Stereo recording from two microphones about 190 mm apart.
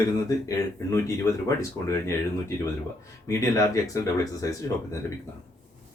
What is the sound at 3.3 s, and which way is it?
Speech, 15° left (ahead or behind).